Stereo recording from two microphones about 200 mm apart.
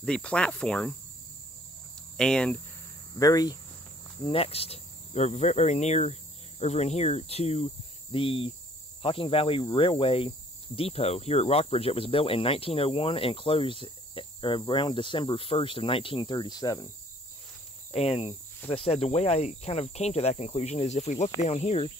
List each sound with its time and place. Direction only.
0.0 s cricket: 5° left (ahead or behind)
2.1 s cricket: 5° left (ahead or behind)
3.2 s speech: 20° left (ahead or behind)
4.2 s cricket: 30° left (ahead or behind)
9.0 s speech: 25° left (ahead or behind)
17.9 s cricket: 30° left (ahead or behind)